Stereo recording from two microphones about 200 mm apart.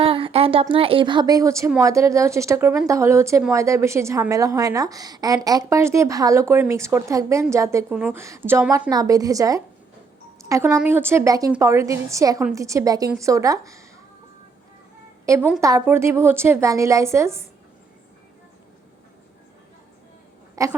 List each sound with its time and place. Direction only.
0.0 s a woman's voice: 30° right (ahead or behind)
15.3 s a woman's voice: 10° right (ahead or behind)
20.6 s a woman's voice: 15° right (ahead or behind)